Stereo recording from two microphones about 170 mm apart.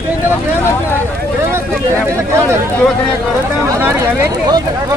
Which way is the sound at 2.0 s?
15° right (ahead or behind).